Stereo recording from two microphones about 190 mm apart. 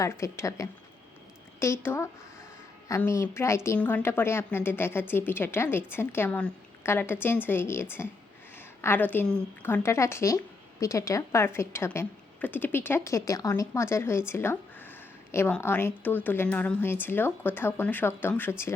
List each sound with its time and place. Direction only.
0.0 s a woman's voice: 15° left (ahead or behind)